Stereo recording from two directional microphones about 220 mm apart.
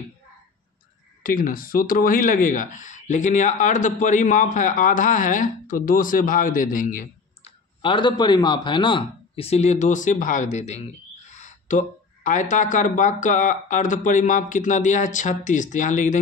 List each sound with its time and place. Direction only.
1.2 s speech: 40° left (ahead or behind)
7.8 s a man's voice: 20° left (ahead or behind)